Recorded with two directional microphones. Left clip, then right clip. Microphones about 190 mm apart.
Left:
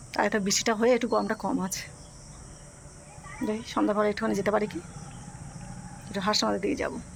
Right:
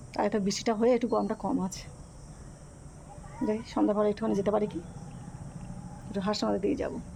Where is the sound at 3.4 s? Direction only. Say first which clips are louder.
Left 1 dB; 5° right (ahead or behind).